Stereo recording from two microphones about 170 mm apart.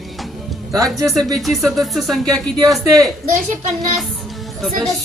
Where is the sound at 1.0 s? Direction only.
Centre (ahead or behind).